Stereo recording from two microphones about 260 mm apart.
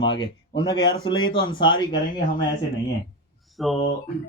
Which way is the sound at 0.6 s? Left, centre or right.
Centre.